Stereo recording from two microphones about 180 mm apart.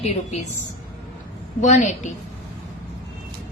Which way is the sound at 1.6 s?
40° left (ahead or behind).